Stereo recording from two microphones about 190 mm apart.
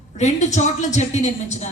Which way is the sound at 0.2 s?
35° left (ahead or behind).